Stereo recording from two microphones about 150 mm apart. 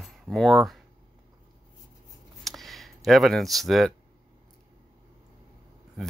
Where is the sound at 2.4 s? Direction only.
Centre (ahead or behind).